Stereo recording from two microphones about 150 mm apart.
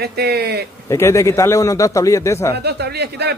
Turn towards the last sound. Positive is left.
turn(degrees=-90)